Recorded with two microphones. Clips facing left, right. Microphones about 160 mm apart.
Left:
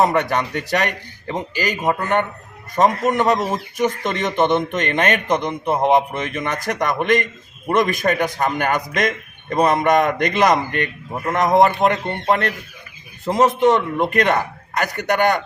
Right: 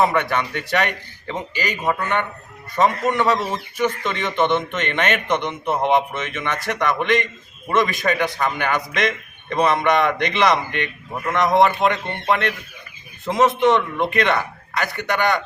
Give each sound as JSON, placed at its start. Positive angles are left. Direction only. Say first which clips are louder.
{"t": 0.0, "sound": "a man's voice", "louder": "left 2 dB", "side_deg": 40}